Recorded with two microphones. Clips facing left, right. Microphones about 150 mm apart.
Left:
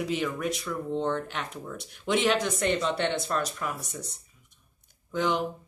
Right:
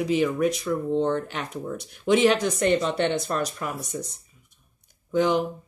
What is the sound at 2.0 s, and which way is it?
Speech, centre (ahead or behind).